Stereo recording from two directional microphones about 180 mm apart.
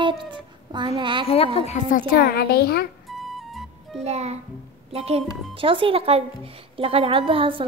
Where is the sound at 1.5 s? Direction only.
40° left (ahead or behind); by 2.8 s 60° left (ahead or behind).